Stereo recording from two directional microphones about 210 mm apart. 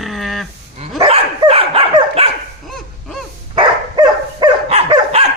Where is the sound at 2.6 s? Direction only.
Centre (ahead or behind).